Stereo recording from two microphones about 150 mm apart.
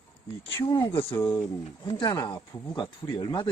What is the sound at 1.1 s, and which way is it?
Speech, 30° left (ahead or behind).